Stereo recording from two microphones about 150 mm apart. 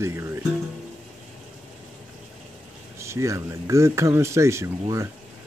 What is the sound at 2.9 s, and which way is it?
Speech, 20° right (ahead or behind).